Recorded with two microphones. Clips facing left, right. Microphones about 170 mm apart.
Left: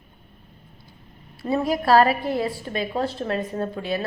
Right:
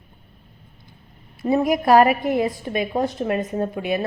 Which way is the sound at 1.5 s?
15° right (ahead or behind).